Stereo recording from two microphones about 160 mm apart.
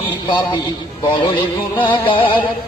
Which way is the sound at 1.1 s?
30° left (ahead or behind).